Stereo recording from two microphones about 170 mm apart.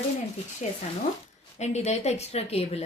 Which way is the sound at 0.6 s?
40° left (ahead or behind).